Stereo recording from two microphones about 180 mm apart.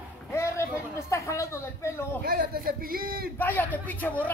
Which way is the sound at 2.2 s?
50° right (ahead or behind).